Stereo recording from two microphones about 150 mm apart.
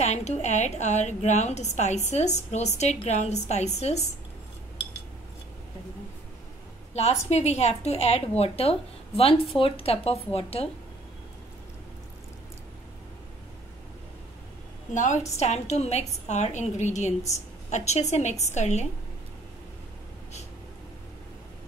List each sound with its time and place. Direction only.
0.0 s a woman's voice: 50° left (ahead or behind)
6.9 s a woman's voice: 45° left (ahead or behind)
15.0 s a woman's voice: 50° left (ahead or behind)